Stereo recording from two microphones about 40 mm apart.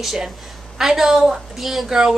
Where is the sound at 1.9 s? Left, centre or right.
Centre.